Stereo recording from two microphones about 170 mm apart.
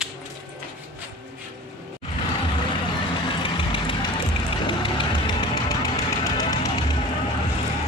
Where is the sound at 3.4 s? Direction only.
30° left (ahead or behind).